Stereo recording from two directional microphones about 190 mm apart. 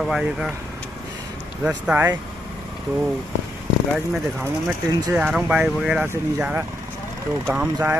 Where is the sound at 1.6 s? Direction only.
10° right (ahead or behind).